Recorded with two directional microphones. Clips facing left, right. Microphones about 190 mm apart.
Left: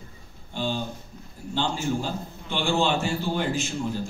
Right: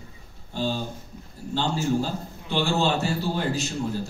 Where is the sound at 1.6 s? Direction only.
40° right (ahead or behind).